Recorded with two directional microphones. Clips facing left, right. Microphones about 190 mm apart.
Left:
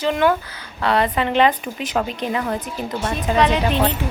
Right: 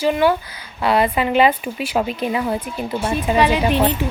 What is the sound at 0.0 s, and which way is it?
A woman's voice, 10° right (ahead or behind).